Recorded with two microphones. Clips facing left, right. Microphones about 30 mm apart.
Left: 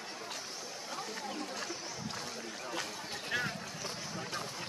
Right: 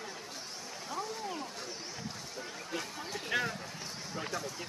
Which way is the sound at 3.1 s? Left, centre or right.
Centre.